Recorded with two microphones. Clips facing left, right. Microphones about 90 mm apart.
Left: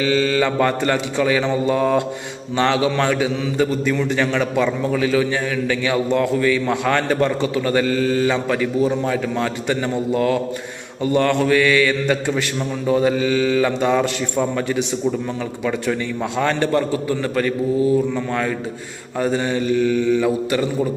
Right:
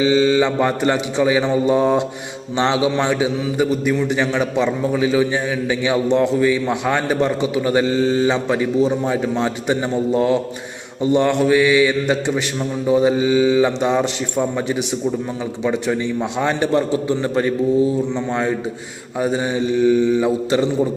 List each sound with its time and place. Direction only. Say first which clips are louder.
0.0 s a man's voice: right 3 dB; 20° right (ahead or behind)
16.4 s a man's voice: even; 15° right (ahead or behind)
19.2 s a man's voice: right 1 dB; 15° right (ahead or behind)